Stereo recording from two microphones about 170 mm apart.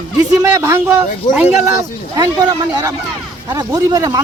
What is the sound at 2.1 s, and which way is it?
Speech, 25° right (ahead or behind).